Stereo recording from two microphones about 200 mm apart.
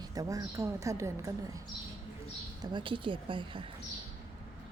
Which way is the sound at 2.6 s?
25° right (ahead or behind).